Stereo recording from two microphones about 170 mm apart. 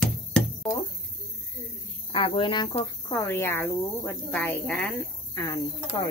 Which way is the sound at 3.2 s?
15° left (ahead or behind).